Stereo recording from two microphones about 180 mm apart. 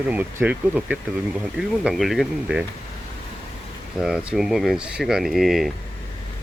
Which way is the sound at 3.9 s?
5° right (ahead or behind).